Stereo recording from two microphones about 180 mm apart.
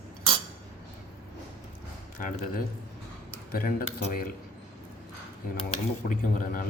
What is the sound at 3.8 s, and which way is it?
Speech, 35° left (ahead or behind).